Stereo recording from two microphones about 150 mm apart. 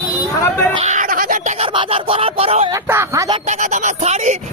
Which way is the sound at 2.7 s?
20° right (ahead or behind).